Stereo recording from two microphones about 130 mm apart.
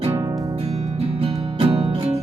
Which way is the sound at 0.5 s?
55° right (ahead or behind).